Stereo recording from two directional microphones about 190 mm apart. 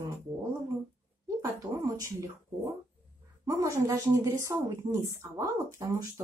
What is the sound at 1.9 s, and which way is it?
Speech, 15° right (ahead or behind).